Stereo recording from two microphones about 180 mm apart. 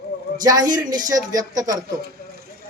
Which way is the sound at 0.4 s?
20° right (ahead or behind).